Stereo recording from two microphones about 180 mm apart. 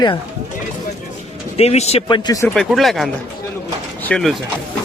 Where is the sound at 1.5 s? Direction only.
35° left (ahead or behind).